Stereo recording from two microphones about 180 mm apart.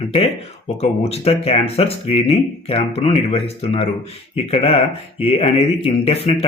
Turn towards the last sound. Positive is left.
turn(degrees=30)  # may be behind; listen again after turning